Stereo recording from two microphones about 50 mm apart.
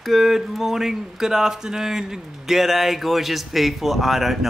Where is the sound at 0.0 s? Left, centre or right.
Centre.